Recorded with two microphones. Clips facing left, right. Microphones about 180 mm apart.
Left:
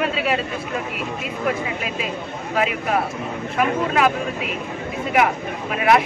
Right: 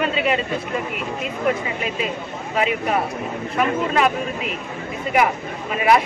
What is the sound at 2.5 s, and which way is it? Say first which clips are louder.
Speech: even; centre (ahead or behind).